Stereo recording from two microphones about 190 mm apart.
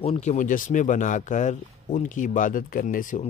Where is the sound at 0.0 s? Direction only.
35° left (ahead or behind).